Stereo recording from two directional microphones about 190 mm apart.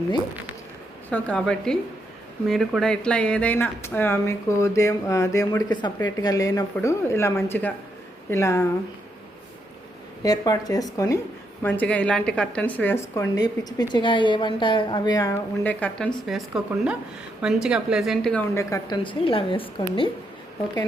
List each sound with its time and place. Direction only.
1.1 s speech: 5° left (ahead or behind)
10.2 s a woman's voice: 20° left (ahead or behind); by 16.4 s centre (ahead or behind)
17.4 s speech: 5° right (ahead or behind)
18.5 s a woman's voice: 20° left (ahead or behind)